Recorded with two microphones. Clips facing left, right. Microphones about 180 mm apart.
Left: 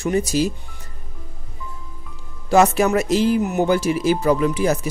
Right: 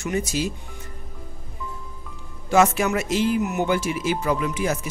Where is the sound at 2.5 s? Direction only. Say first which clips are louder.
Left 4 dB; 40° left (ahead or behind).